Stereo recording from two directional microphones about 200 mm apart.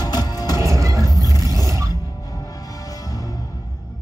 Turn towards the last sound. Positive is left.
turn(degrees=20)  # may be behind; listen again after turning